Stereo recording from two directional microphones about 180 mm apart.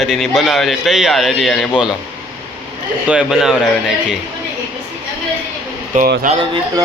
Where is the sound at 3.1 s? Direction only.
5° right (ahead or behind).